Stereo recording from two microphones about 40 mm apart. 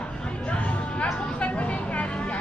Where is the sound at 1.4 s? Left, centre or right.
Left.